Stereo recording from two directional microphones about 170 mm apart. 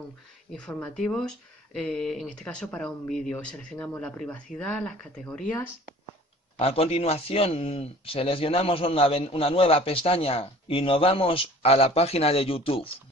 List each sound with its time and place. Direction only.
0.5 s speech: 5° left (ahead or behind)
6.6 s a man's voice: 35° left (ahead or behind)